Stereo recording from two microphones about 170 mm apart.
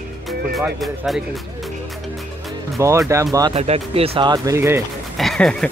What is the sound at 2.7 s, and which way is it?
Speech, 15° right (ahead or behind).